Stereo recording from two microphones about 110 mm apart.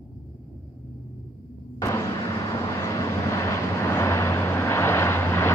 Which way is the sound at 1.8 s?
25° left (ahead or behind).